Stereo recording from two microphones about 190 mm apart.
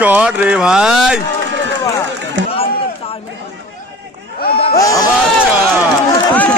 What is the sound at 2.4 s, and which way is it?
Run, 75° right (ahead or behind).